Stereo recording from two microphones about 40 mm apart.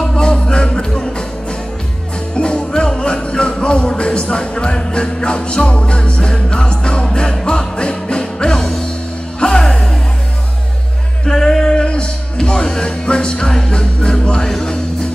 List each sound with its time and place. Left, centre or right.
0.1 s music: left
2.3 s music: left
11.2 s music: centre